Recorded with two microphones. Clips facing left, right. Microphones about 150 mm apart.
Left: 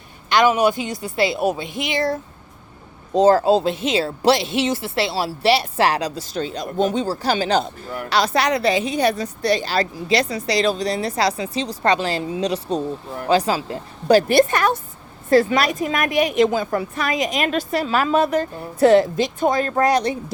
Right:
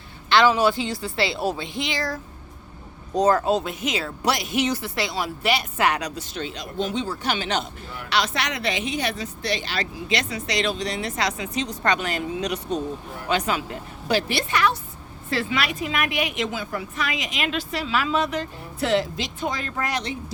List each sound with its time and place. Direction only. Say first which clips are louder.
0.3 s speech: left 2 dB; 15° left (ahead or behind)
1.6 s speech: left 2 dB; 25° right (ahead or behind)
1.9 s speech: left 7 dB; 25° left (ahead or behind)
14.2 s a woman's voice: left 5 dB; 50° left (ahead or behind)